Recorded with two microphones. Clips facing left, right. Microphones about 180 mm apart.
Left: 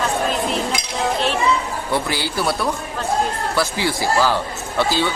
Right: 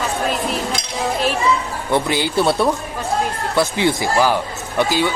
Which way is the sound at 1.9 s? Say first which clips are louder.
Right 5 dB; 20° right (ahead or behind).